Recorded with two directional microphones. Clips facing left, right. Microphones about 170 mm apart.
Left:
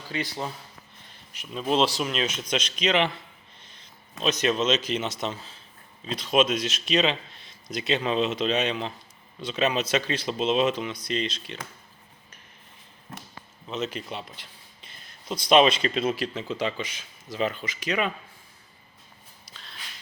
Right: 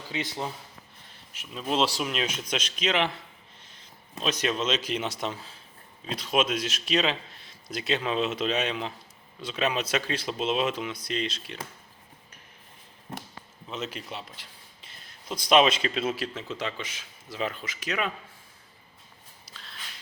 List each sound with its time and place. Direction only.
0.1 s a man's voice: 20° right (ahead or behind)
1.3 s speech: centre (ahead or behind)
4.2 s a man's voice: 5° right (ahead or behind)
13.7 s speech: 5° right (ahead or behind)
15.4 s speech: 5° right (ahead or behind)
19.5 s a sound: 5° right (ahead or behind)